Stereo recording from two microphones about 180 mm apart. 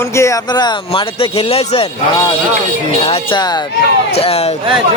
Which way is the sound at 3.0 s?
30° left (ahead or behind).